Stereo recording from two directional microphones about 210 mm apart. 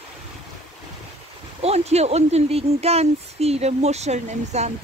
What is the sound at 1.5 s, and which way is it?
Speech, 30° right (ahead or behind).